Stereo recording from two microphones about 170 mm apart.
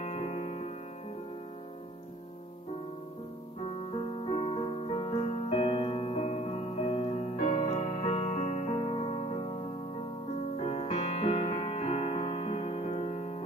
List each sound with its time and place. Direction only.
0.0 s music: 35° left (ahead or behind)
4.3 s music: 35° left (ahead or behind)
10.6 s music: 40° left (ahead or behind)